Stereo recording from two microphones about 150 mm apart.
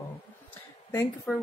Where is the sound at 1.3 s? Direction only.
15° left (ahead or behind).